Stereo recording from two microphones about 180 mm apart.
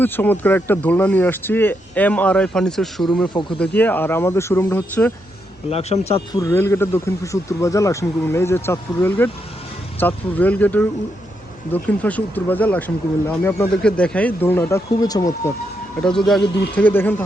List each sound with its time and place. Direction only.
0.0 s speech: 10° left (ahead or behind)
5.7 s speech: 35° left (ahead or behind)
6.3 s speech: 15° left (ahead or behind)
16.0 s speech: 5° left (ahead or behind)